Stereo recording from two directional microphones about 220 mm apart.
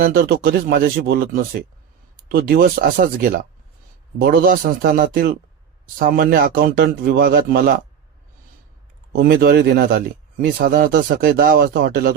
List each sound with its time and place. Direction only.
0.0 s speech: 45° right (ahead or behind)
2.3 s a man's voice: 40° right (ahead or behind)
9.1 s speech: 45° right (ahead or behind)